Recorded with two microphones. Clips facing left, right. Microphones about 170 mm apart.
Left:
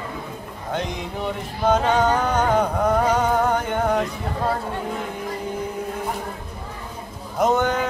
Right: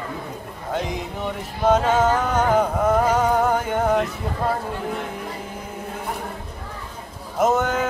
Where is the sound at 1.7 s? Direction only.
5° right (ahead or behind).